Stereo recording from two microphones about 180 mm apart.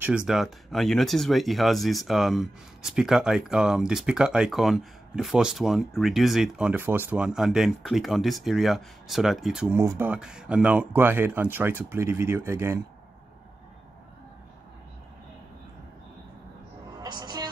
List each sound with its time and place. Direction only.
0.0 s speech: 5° right (ahead or behind)
17.0 s music: 25° right (ahead or behind)